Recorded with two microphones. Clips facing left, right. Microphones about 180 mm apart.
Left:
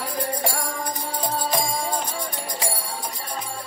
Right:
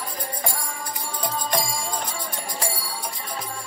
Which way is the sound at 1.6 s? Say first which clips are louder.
Left 4 dB; 55° left (ahead or behind).